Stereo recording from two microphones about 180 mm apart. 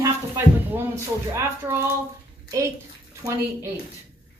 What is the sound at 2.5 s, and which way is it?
Speech, 15° right (ahead or behind).